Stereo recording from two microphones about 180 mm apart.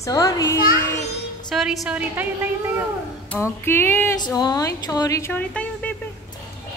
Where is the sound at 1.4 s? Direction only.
Centre (ahead or behind).